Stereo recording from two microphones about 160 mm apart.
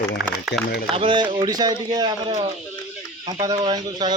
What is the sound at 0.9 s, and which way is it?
Speech, 30° right (ahead or behind).